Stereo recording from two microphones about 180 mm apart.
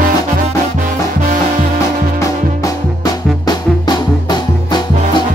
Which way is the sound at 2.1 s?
20° left (ahead or behind).